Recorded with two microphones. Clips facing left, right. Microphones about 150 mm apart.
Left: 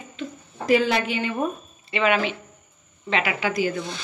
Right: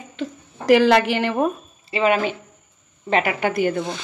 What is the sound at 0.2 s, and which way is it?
Speech, 75° right (ahead or behind).